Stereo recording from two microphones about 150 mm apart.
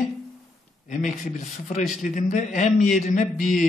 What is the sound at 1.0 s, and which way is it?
A man's voice, 50° left (ahead or behind).